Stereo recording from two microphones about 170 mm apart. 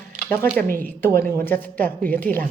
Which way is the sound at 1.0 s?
15° left (ahead or behind).